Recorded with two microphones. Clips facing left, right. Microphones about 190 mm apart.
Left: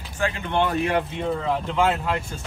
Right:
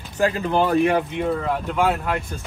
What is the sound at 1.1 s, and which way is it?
Speech, 5° right (ahead or behind).